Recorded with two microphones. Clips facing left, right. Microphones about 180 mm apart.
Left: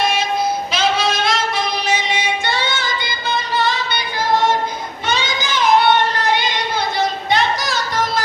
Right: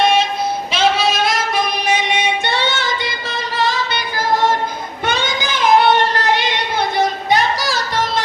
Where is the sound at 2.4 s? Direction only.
65° right (ahead or behind).